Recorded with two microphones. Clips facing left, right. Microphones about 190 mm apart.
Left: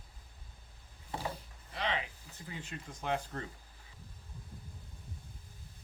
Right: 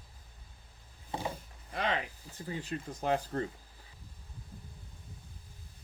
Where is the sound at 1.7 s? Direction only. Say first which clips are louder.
Right 3 dB; 45° right (ahead or behind).